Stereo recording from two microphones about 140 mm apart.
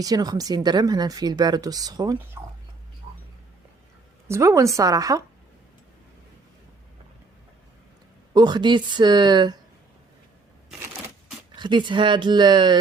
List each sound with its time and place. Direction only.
0.0 s speech: 25° right (ahead or behind)
4.3 s speech: 20° right (ahead or behind)
8.3 s speech: 30° right (ahead or behind)
11.5 s speech: 35° right (ahead or behind)